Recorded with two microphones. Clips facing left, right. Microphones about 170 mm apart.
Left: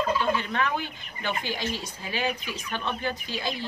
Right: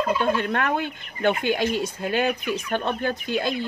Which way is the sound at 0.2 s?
55° right (ahead or behind).